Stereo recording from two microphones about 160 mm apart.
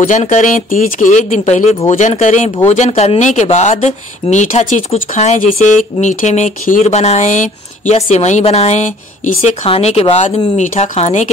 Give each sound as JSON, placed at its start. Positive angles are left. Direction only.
{"t": 0.0, "sound": "speech", "side_deg": 50}